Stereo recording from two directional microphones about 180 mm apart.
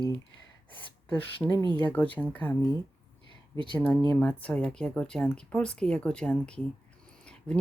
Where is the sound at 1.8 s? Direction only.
10° left (ahead or behind).